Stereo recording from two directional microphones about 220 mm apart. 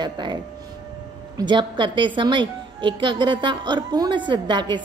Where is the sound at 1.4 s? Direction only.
20° right (ahead or behind).